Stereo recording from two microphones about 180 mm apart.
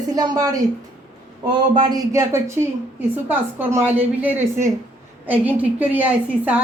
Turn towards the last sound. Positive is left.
turn(degrees=-10)  # may be behind; listen again after turning